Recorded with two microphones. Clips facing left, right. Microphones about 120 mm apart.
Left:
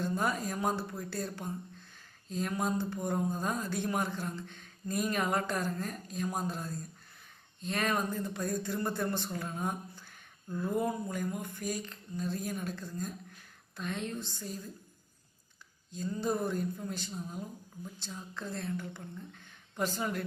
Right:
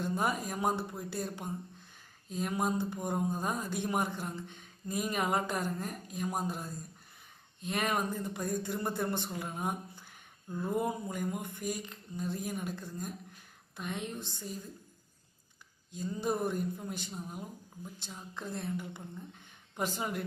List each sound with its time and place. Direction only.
0.0 s speech: 15° right (ahead or behind)
16.0 s speech: 15° right (ahead or behind)